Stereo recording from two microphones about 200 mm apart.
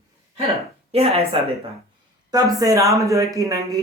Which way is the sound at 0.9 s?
30° right (ahead or behind).